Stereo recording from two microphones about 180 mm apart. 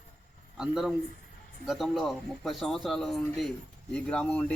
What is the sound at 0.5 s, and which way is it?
A man's voice, centre (ahead or behind).